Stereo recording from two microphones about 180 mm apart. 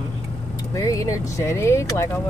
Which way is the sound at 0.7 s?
20° left (ahead or behind).